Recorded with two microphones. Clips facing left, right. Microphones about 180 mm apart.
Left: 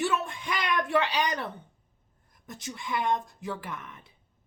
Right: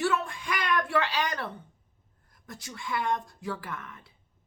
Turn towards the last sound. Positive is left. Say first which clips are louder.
# even
turn(degrees=20)  # may be behind; listen again after turning